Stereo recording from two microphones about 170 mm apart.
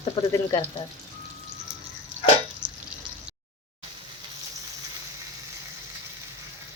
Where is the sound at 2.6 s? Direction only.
25° right (ahead or behind).